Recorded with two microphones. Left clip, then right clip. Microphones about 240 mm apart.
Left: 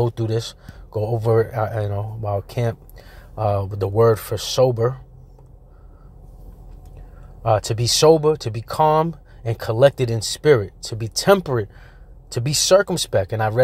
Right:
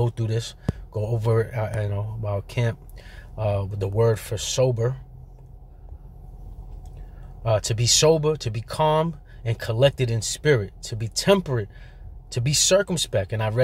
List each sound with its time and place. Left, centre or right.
0.1 s speech: centre
7.4 s speech: centre